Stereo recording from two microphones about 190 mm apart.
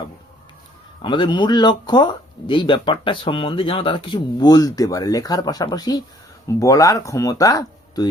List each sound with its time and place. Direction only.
1.0 s speech: 25° left (ahead or behind)